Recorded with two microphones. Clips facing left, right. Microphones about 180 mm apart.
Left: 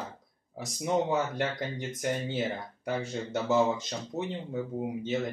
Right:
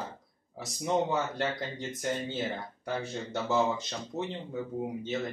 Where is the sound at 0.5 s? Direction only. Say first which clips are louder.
Left 1 dB; 10° left (ahead or behind).